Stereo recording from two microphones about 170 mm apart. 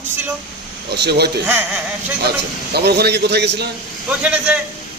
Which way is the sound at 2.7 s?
70° right (ahead or behind).